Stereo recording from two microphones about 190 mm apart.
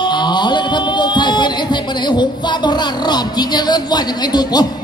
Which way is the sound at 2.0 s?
25° left (ahead or behind).